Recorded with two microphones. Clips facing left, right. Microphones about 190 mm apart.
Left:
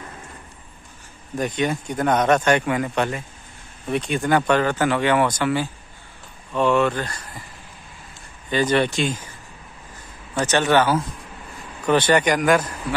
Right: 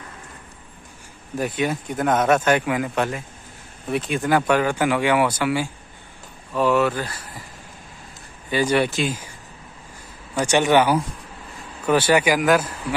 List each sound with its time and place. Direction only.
1.4 s speech: 5° right (ahead or behind)
8.5 s speech: 10° right (ahead or behind)
10.4 s speech: 15° right (ahead or behind)